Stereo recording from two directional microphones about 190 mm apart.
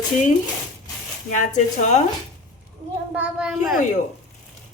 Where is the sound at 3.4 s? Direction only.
5° right (ahead or behind).